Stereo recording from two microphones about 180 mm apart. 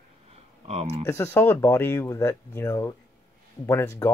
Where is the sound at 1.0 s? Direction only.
15° left (ahead or behind).